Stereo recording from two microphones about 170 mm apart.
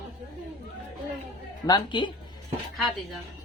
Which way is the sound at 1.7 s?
25° left (ahead or behind).